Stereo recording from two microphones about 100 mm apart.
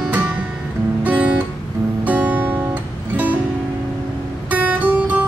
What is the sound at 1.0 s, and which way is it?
Guitar, 15° right (ahead or behind).